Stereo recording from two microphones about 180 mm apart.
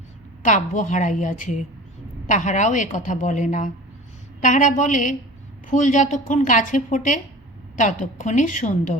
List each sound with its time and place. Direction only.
0.4 s a woman's voice: 45° left (ahead or behind)